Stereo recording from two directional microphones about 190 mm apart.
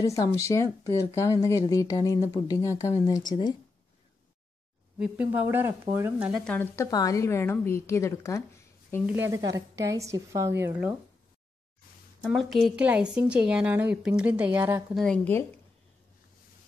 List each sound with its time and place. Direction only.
0.0 s speech: 15° left (ahead or behind)
4.9 s a woman's voice: 5° right (ahead or behind)
6.4 s speech: 10° left (ahead or behind)
9.0 s a woman's voice: 10° right (ahead or behind)
12.3 s a woman's voice: centre (ahead or behind)
15.0 s speech: 10° left (ahead or behind)